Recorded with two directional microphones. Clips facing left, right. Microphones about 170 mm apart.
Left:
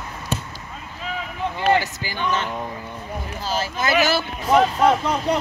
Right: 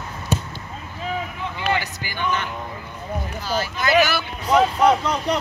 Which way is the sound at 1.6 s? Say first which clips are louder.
Left 5 dB; 40° left (ahead or behind).